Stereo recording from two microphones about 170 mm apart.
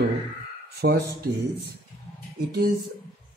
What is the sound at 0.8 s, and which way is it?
Speech, 75° right (ahead or behind).